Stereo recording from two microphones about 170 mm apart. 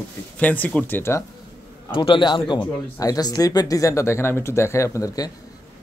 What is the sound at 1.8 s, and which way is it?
A man's voice, 30° left (ahead or behind).